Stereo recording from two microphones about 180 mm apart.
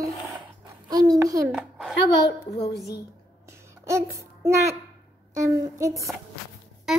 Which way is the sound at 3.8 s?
15° right (ahead or behind).